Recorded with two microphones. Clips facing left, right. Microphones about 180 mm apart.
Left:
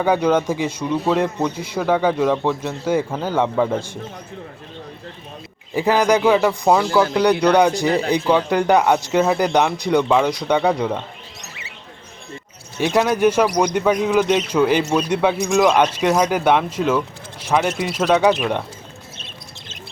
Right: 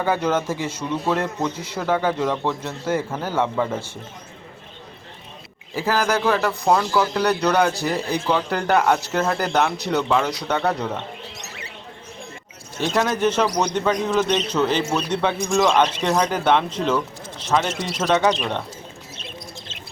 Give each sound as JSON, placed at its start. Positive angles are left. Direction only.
{"t": 0.0, "sound": "a man's voice", "side_deg": 15}
{"t": 6.0, "sound": "a man's voice", "side_deg": 15}
{"t": 7.9, "sound": "speech", "side_deg": 65}
{"t": 8.3, "sound": "a man's voice", "side_deg": 10}
{"t": 12.9, "sound": "a man's voice", "side_deg": 10}